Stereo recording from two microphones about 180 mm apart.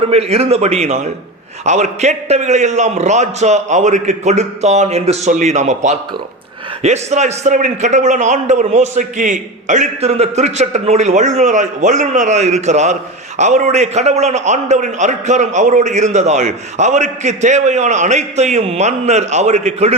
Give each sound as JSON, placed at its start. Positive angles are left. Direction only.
{"t": 0.0, "sound": "a man's voice", "side_deg": -35}